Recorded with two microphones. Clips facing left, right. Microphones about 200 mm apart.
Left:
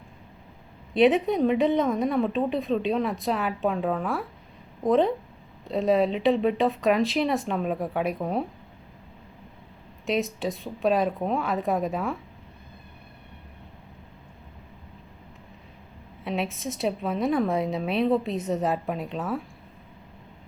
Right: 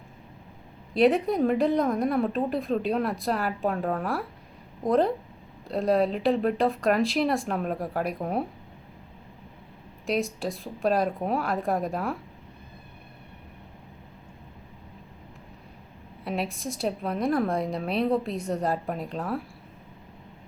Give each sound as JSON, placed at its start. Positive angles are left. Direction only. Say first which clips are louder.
{"t": 0.9, "sound": "a woman's voice", "louder": "left 1 dB", "side_deg": 0}
{"t": 10.1, "sound": "a woman's voice", "louder": "left 1 dB", "side_deg": 0}
{"t": 16.2, "sound": "a woman's voice", "louder": "left 1 dB", "side_deg": 0}